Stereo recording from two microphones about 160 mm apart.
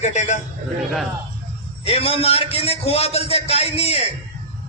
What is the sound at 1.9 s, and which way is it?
A man's voice, 40° left (ahead or behind).